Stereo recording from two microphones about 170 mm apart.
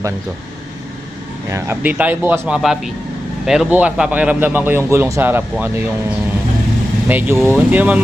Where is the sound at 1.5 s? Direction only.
15° right (ahead or behind).